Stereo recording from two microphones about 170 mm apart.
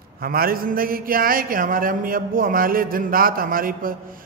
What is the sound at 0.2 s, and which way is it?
A man's voice, 60° right (ahead or behind).